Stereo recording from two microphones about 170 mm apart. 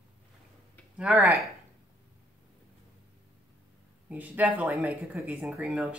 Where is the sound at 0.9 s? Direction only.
5° right (ahead or behind).